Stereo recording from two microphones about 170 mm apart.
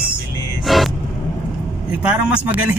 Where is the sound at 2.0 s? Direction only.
5° right (ahead or behind).